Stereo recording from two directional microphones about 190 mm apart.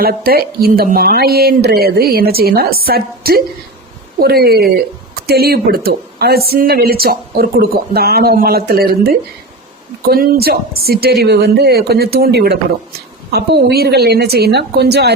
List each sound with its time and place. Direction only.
0.0 s a woman's voice: 50° right (ahead or behind)